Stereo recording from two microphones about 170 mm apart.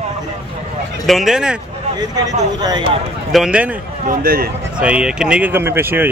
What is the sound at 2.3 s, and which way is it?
Speech, 20° right (ahead or behind).